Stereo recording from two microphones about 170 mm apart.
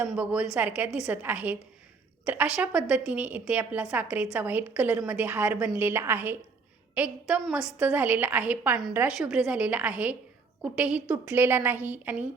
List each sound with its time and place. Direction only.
0.0 s a woman's voice: 5° right (ahead or behind)